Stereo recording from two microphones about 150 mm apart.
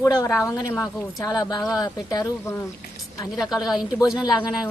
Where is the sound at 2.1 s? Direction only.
25° left (ahead or behind).